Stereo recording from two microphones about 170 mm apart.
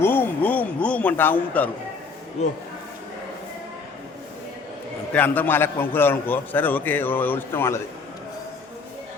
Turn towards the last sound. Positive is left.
turn(degrees=15)  # may be behind; listen again after turning